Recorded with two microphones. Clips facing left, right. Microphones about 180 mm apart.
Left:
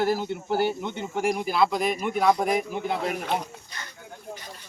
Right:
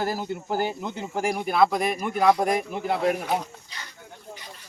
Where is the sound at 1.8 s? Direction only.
Centre (ahead or behind).